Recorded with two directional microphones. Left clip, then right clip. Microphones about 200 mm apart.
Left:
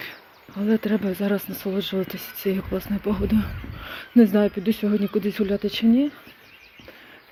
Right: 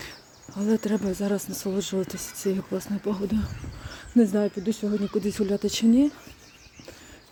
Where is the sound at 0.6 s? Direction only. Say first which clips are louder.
Left 2 dB; 25° right (ahead or behind).